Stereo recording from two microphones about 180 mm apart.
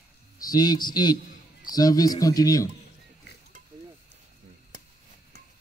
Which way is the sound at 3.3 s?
65° left (ahead or behind).